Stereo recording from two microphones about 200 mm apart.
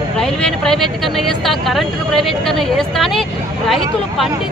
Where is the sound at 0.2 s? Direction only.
5° left (ahead or behind).